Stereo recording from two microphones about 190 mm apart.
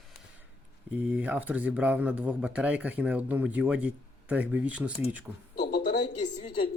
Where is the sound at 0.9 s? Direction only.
10° right (ahead or behind).